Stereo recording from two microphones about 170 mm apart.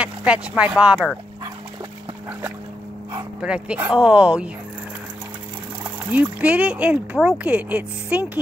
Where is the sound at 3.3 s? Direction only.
5° right (ahead or behind).